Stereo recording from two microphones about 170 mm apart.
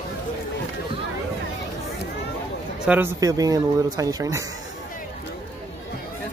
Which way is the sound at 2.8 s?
10° right (ahead or behind).